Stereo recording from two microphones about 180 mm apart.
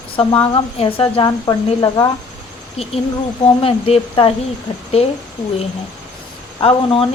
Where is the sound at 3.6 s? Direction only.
30° left (ahead or behind).